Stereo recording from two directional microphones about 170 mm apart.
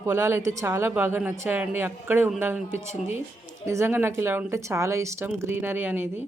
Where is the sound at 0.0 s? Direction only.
15° right (ahead or behind).